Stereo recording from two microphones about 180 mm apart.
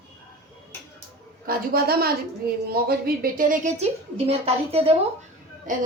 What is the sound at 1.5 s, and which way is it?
A woman's voice, 55° right (ahead or behind).